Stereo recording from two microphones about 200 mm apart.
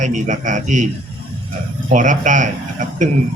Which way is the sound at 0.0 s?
40° right (ahead or behind).